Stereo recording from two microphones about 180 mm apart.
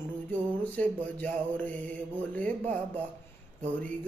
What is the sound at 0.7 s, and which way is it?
Music, 10° left (ahead or behind).